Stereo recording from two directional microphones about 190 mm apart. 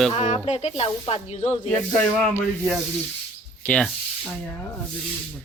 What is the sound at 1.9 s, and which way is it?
Rub, 5° left (ahead or behind).